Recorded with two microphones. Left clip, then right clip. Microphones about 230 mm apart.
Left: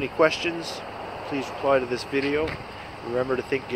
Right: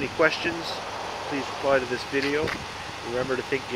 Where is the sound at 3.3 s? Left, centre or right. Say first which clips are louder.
Left 1 dB; centre.